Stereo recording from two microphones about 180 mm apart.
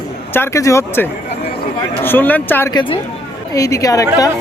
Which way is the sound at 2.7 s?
25° left (ahead or behind).